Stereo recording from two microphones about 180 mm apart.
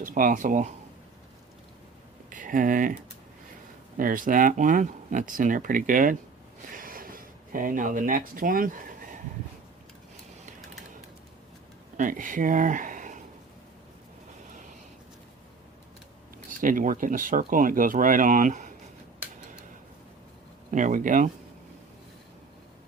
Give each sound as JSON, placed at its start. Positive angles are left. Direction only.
{"t": 0.0, "sound": "speech", "side_deg": -50}
{"t": 2.3, "sound": "speech", "side_deg": -45}
{"t": 3.9, "sound": "speech", "side_deg": -50}
{"t": 6.7, "sound": "a sound", "side_deg": -50}
{"t": 11.9, "sound": "speech", "side_deg": -45}
{"t": 16.5, "sound": "speech", "side_deg": -50}
{"t": 20.7, "sound": "speech", "side_deg": -45}